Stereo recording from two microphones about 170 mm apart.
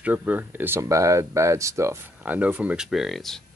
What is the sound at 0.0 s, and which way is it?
Speech, 10° right (ahead or behind).